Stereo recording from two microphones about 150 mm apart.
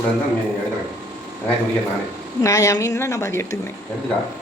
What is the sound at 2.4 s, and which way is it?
A woman's voice, 20° left (ahead or behind).